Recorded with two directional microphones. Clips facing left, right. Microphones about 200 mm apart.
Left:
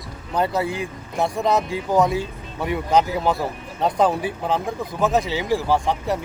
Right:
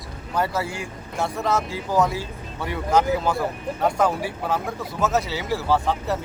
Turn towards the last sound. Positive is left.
turn(degrees=15)  # may be behind; listen again after turning